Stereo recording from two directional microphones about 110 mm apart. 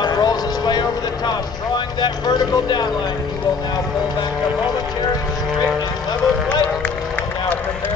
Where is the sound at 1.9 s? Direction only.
40° left (ahead or behind).